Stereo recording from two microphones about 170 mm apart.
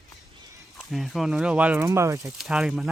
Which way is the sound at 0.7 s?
Centre (ahead or behind).